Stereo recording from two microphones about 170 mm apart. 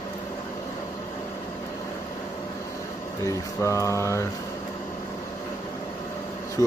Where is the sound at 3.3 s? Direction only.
15° left (ahead or behind).